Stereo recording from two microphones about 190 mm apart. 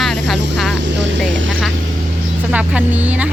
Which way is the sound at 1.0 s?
80° right.